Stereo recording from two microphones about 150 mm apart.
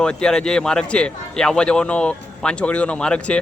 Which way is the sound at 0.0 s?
5° left (ahead or behind).